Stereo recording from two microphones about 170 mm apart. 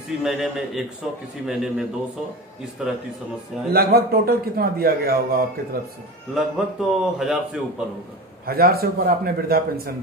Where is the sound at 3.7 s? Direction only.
65° right (ahead or behind).